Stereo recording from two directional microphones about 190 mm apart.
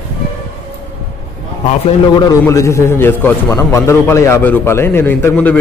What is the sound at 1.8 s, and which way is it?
A man's voice, 20° left (ahead or behind).